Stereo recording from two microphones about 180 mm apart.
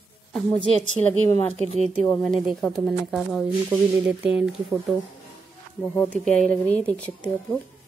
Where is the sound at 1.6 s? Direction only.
35° right (ahead or behind).